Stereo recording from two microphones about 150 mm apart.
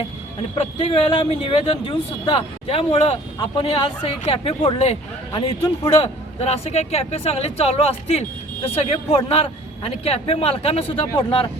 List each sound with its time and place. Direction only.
0.5 s speech: 35° left (ahead or behind)
5.6 s speech: 30° left (ahead or behind)
6.4 s speech: 45° left (ahead or behind)